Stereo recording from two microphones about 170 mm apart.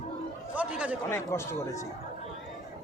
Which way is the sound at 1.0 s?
15° left (ahead or behind).